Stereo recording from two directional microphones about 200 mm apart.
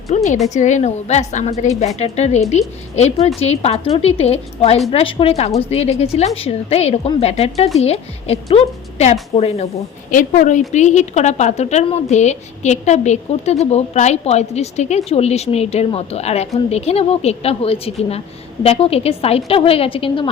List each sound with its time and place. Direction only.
0.1 s a woman's voice: 35° left (ahead or behind)
10.1 s a woman's voice: 40° left (ahead or behind)